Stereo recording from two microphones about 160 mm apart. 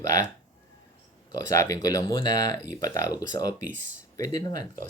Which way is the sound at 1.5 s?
20° left (ahead or behind).